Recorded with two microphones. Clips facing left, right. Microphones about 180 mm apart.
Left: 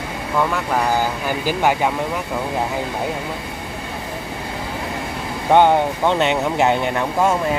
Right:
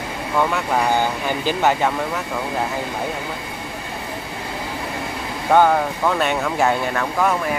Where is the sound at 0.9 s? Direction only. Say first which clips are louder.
Even; 5° left (ahead or behind).